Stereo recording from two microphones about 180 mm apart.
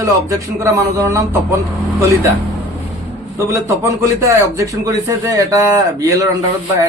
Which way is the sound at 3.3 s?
15° right (ahead or behind).